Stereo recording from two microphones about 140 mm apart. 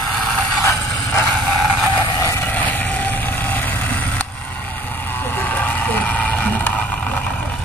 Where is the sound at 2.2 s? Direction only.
15° left (ahead or behind).